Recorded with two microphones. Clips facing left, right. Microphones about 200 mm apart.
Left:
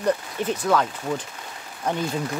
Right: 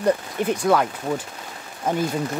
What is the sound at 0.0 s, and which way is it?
Speech, 10° right (ahead or behind).